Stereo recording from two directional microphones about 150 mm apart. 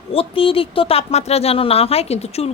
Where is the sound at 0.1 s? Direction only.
40° left (ahead or behind).